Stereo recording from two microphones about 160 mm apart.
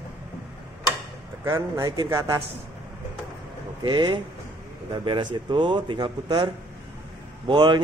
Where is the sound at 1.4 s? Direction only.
20° right (ahead or behind).